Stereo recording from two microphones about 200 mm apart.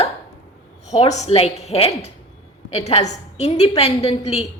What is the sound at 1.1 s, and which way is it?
A woman's voice, 30° left (ahead or behind).